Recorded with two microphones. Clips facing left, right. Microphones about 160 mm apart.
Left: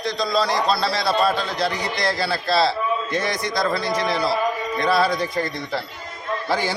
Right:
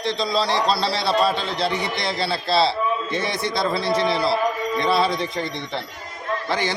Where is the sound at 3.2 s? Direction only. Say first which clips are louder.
Even; 30° right (ahead or behind).